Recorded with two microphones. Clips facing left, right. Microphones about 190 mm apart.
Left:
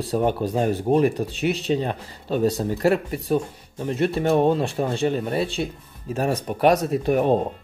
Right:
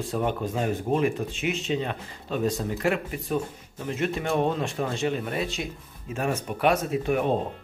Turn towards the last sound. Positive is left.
turn(degrees=40)  # may be behind; listen again after turning